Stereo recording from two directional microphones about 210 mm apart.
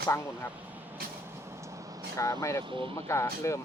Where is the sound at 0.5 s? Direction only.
10° right (ahead or behind).